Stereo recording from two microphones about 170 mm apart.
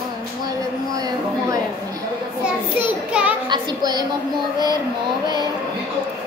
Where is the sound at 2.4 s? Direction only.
5° right (ahead or behind).